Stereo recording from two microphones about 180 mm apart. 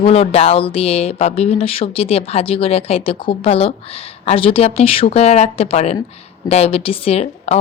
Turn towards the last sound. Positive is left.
turn(degrees=35)  # may be behind; listen again after turning